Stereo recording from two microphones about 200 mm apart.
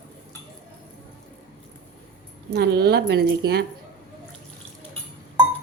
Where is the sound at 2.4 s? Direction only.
55° right (ahead or behind).